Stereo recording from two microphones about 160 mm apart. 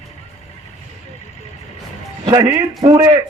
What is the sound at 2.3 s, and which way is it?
Speech, 25° right (ahead or behind).